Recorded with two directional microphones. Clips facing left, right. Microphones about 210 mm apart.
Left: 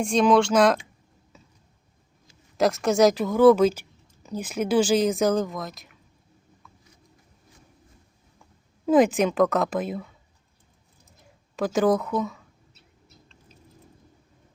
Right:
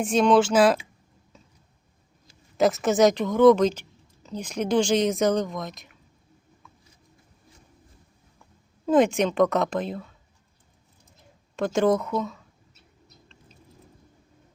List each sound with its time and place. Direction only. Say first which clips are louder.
0.0 s speech: even; 5° right (ahead or behind)
2.6 s speech: even; centre (ahead or behind)
8.9 s speech: left 1 dB; centre (ahead or behind)
11.5 s speech: even; centre (ahead or behind)